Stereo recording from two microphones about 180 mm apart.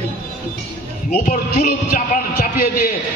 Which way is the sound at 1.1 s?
50° left (ahead or behind).